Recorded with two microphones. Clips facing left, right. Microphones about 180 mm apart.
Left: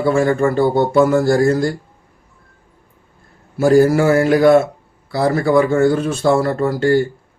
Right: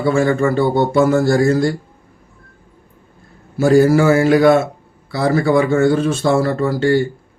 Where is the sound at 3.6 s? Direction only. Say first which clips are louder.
Even; 45° left (ahead or behind).